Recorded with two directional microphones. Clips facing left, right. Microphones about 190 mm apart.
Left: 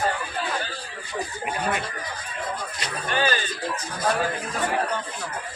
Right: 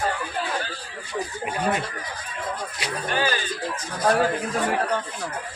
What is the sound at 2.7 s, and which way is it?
Speech, 10° right (ahead or behind).